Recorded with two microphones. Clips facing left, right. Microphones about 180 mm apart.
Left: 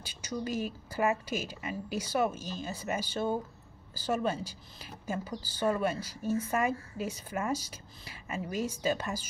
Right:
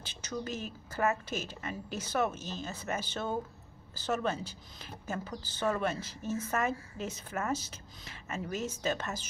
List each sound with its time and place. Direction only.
0.0 s speech: 10° left (ahead or behind)